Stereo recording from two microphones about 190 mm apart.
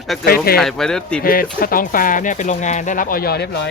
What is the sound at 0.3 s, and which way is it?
Speech, 50° left (ahead or behind).